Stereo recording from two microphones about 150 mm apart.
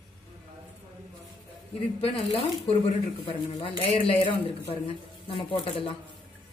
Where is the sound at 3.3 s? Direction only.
35° left (ahead or behind).